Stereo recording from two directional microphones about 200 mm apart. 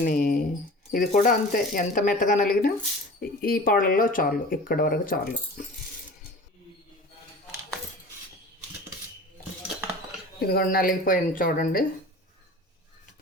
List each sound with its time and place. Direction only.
0.0 s a sound: 40° left (ahead or behind)
0.9 s speech: 40° left (ahead or behind)
10.4 s speech: 50° left (ahead or behind)